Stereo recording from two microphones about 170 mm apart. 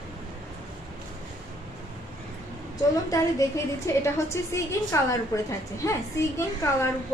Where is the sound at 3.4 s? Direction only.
20° left (ahead or behind).